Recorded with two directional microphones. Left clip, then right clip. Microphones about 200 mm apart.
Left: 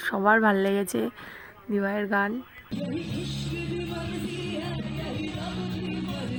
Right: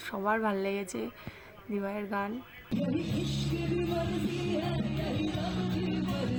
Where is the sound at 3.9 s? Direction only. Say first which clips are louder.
Right 1 dB; 45° left (ahead or behind).